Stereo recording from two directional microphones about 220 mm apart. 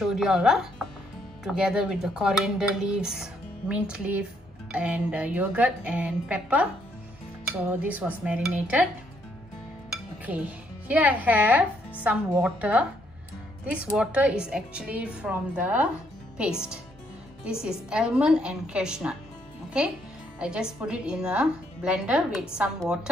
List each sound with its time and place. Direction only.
0.0 s a woman's voice: centre (ahead or behind)
10.2 s a woman's voice: 5° right (ahead or behind)
17.5 s a woman's voice: 5° right (ahead or behind)